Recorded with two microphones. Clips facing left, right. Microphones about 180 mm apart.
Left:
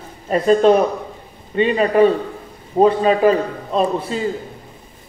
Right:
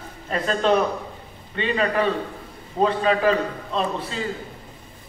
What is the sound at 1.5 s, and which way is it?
A man's voice, 45° left (ahead or behind).